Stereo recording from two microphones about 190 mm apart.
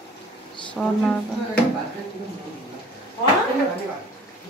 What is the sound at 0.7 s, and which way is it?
Speech, 5° left (ahead or behind).